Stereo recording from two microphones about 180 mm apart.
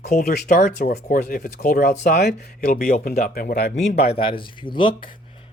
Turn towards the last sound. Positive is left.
turn(degrees=30)  # may be behind; listen again after turning